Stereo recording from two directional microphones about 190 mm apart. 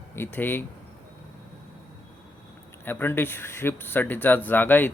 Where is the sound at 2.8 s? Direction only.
10° left (ahead or behind).